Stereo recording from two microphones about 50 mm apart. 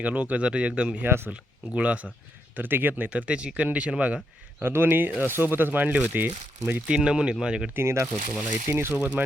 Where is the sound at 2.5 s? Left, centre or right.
Right.